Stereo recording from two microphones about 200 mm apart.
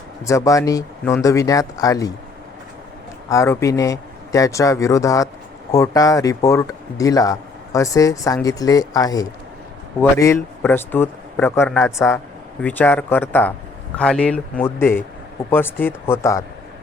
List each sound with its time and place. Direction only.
0.3 s speech: 15° left (ahead or behind)
3.2 s speech: 15° left (ahead or behind)